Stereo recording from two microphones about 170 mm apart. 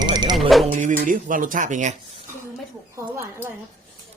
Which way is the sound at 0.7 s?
45° right (ahead or behind).